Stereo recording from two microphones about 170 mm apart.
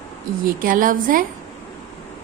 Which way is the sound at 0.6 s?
55° right (ahead or behind).